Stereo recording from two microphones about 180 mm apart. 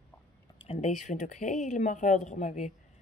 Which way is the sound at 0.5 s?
35° left (ahead or behind).